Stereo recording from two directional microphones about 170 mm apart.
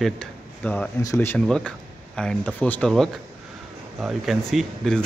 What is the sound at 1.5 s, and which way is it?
Speech, 5° left (ahead or behind).